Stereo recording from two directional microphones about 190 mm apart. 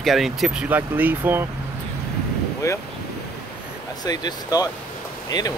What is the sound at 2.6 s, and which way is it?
Speech, 15° left (ahead or behind).